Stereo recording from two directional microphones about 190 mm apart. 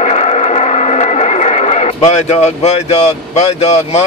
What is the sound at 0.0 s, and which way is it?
Radio, 35° left (ahead or behind).